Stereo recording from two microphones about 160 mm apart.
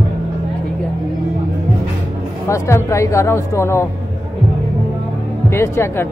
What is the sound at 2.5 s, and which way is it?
Speech, 15° left (ahead or behind).